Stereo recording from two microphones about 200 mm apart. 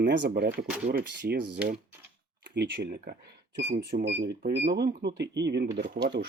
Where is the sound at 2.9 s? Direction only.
45° right (ahead or behind).